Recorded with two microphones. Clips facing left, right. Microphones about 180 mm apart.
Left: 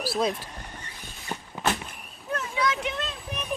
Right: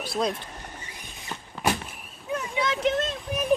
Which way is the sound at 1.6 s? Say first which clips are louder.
Right 1 dB; 10° right (ahead or behind).